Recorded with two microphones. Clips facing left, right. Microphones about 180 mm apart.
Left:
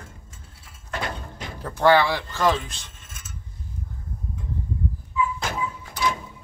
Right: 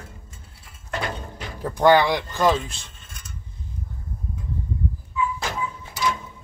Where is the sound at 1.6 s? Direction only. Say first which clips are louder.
Right 2 dB; 15° right (ahead or behind).